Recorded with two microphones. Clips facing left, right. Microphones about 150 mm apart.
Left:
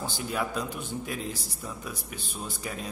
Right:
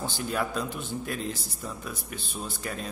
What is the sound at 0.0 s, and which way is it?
A man's voice, 10° left (ahead or behind).